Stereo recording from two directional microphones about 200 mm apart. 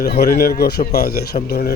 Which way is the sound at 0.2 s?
50° left (ahead or behind).